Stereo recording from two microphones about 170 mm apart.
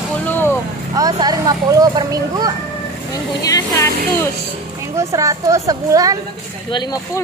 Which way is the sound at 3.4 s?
20° left (ahead or behind).